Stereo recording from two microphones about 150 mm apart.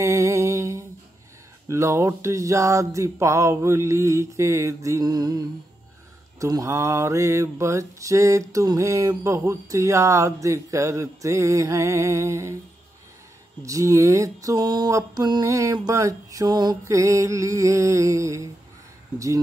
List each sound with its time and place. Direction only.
0.0 s mantra: 20° right (ahead or behind)
13.6 s mantra: 20° right (ahead or behind)